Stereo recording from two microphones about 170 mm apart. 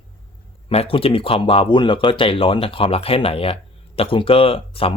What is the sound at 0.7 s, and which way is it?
Speech, 35° left (ahead or behind).